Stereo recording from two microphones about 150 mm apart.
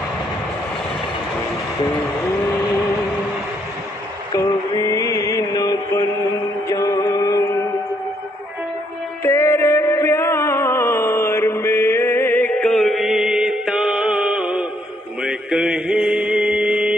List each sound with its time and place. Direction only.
4.3 s music: 25° left (ahead or behind)
9.2 s music: 20° left (ahead or behind); by 14.7 s 10° right (ahead or behind)
15.2 s mantra: 5° right (ahead or behind)